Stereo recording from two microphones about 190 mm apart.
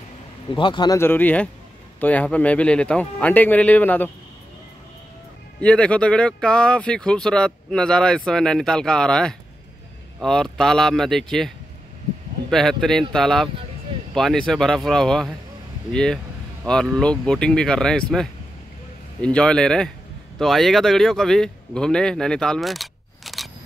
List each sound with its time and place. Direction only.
0.5 s speech: 25° left (ahead or behind); by 4.1 s 10° left (ahead or behind)
5.6 s speech: 5° left (ahead or behind)
19.2 s speech: 5° left (ahead or behind)